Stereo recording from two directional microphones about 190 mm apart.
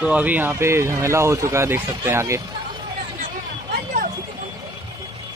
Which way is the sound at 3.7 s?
45° right (ahead or behind).